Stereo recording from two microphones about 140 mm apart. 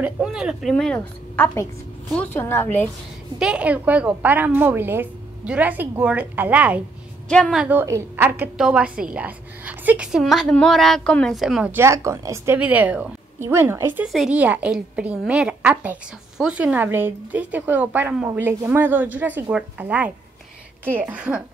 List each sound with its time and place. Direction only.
0.0 s a woman's voice: 5° right (ahead or behind); by 2.8 s 15° left (ahead or behind)
3.3 s a woman's voice: 5° right (ahead or behind)
7.2 s a woman's voice: 5° left (ahead or behind)
7.5 s a woman's voice: 10° right (ahead or behind)
8.5 s a woman's voice: 5° right (ahead or behind)
11.7 s a woman's voice: 20° right (ahead or behind)
14.0 s a woman's voice: 5° right (ahead or behind)